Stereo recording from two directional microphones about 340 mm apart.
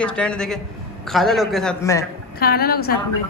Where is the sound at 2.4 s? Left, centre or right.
Left.